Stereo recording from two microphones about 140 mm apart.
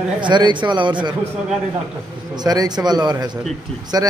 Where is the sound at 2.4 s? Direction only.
30° right (ahead or behind).